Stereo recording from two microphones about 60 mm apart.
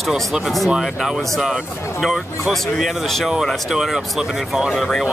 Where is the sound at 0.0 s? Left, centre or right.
Centre.